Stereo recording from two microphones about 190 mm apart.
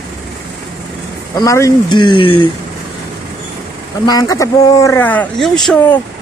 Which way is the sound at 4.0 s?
20° left (ahead or behind).